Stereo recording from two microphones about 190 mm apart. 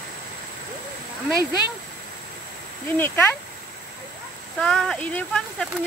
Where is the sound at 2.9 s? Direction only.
10° left (ahead or behind).